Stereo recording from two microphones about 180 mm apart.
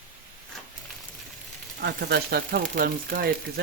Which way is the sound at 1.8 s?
65° right (ahead or behind).